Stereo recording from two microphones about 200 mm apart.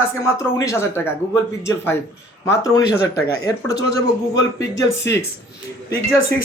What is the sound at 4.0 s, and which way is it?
A man's voice, 15° left (ahead or behind).